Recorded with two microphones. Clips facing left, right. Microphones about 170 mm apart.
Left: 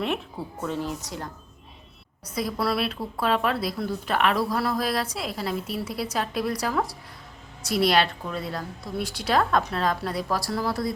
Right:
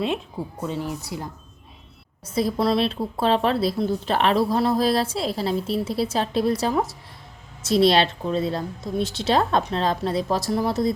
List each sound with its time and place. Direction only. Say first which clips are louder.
0.0 s speech: right 3 dB; 15° right (ahead or behind)
2.2 s speech: right 5 dB; 25° right (ahead or behind)